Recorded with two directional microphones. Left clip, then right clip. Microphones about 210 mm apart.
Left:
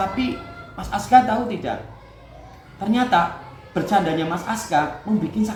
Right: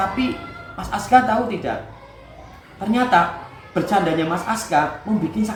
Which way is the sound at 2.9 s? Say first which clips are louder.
Right 2 dB; 15° left (ahead or behind).